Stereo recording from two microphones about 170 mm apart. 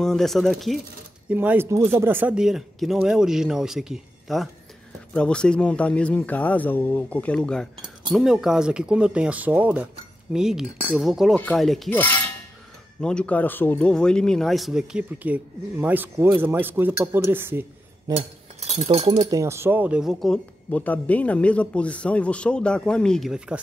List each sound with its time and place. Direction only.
0.0 s speech: centre (ahead or behind)
1.3 s speech: 10° right (ahead or behind)
18.7 s speech: 35° right (ahead or behind)
19.3 s speech: 15° right (ahead or behind)